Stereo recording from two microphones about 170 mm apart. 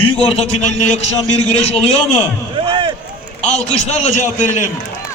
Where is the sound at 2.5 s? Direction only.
30° right (ahead or behind).